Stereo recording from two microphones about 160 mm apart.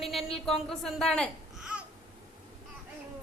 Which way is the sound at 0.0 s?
Centre (ahead or behind).